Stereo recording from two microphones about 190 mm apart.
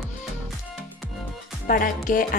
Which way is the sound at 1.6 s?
45° left (ahead or behind).